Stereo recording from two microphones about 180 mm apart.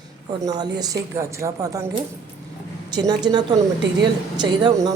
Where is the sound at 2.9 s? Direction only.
25° right (ahead or behind).